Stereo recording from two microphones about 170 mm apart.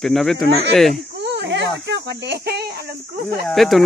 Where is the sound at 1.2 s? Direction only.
90° right; by 3.4 s 75° right (ahead or behind).